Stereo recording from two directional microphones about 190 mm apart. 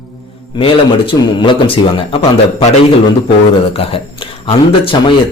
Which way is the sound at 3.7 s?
30° left (ahead or behind).